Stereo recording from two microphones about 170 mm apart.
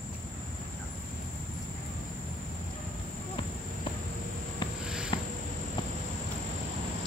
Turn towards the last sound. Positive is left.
turn(degrees=30)  # may be behind; listen again after turning